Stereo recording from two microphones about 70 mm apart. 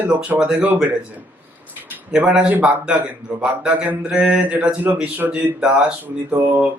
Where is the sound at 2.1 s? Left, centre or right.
Centre.